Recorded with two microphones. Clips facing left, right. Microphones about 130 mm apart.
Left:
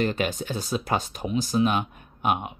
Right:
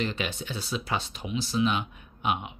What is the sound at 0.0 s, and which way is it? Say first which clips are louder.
Speech: left 6 dB; 45° left (ahead or behind).